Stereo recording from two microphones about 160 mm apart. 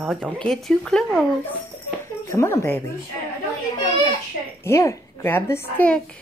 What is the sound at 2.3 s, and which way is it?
Speech, 15° left (ahead or behind).